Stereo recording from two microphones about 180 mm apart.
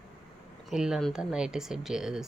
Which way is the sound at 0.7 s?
Centre (ahead or behind).